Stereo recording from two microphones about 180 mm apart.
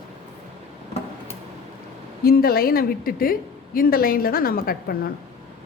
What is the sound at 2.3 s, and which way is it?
A woman's voice, 55° left (ahead or behind).